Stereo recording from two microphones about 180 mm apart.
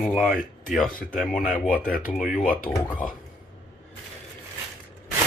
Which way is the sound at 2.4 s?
50° left (ahead or behind).